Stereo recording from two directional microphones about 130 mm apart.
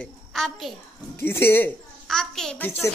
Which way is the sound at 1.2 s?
15° left (ahead or behind).